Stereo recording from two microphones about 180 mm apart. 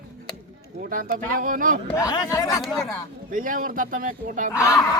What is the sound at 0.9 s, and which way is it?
Speech, 50° right (ahead or behind).